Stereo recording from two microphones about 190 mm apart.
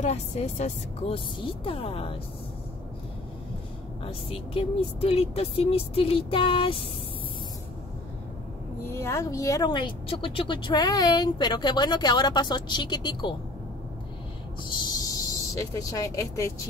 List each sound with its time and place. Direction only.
0.0 s speech: 35° left (ahead or behind)
4.0 s speech: 30° left (ahead or behind)
8.8 s speech: 15° left (ahead or behind)
14.6 s speech: 25° left (ahead or behind)